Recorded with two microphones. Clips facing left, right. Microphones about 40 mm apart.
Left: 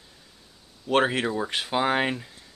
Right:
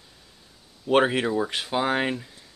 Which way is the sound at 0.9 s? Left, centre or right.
Centre.